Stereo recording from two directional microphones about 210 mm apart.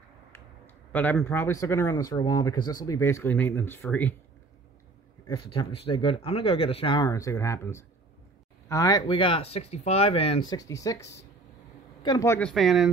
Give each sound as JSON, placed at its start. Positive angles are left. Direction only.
{"t": 0.9, "sound": "speech", "side_deg": 10}
{"t": 5.3, "sound": "speech", "side_deg": 25}
{"t": 10.6, "sound": "speech", "side_deg": 15}